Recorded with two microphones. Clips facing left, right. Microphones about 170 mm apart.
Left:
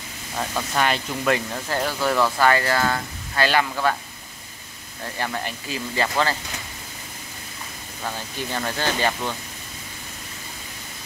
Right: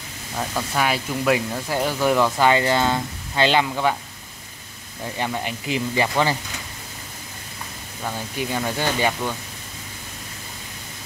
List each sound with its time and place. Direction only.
0.4 s speech: 5° right (ahead or behind)
5.0 s speech: 15° right (ahead or behind)
8.0 s speech: 10° right (ahead or behind)